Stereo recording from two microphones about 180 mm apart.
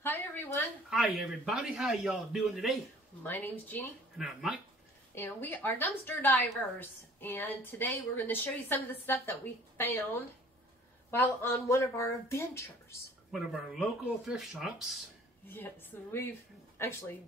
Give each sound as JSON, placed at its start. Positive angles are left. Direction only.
{"t": 0.0, "sound": "speech", "side_deg": 15}
{"t": 0.8, "sound": "a man's voice", "side_deg": 0}
{"t": 3.3, "sound": "a woman's voice", "side_deg": 10}
{"t": 4.2, "sound": "a man's voice", "side_deg": 0}
{"t": 5.1, "sound": "a woman's voice", "side_deg": 10}
{"t": 11.1, "sound": "a woman's voice", "side_deg": 10}
{"t": 13.3, "sound": "a man's voice", "side_deg": -5}
{"t": 15.4, "sound": "a woman's voice", "side_deg": 10}